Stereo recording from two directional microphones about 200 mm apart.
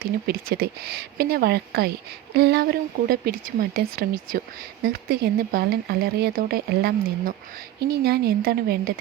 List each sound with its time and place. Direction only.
0.0 s speech: 50° right (ahead or behind)